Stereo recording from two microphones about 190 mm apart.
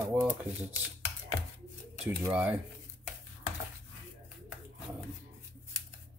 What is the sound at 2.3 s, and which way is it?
Speech, 10° right (ahead or behind).